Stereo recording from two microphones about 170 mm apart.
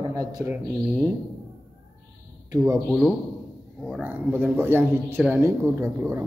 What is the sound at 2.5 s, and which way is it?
Mantra, 15° right (ahead or behind).